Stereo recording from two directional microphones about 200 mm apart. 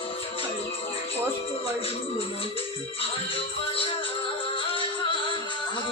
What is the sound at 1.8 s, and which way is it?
Speech, 30° left (ahead or behind).